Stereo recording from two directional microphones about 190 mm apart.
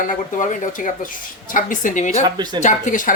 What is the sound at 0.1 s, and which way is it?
Speech, 40° left (ahead or behind).